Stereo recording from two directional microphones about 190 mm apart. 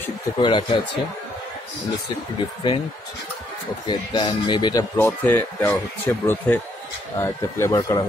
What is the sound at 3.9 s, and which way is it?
Speech, 25° left (ahead or behind).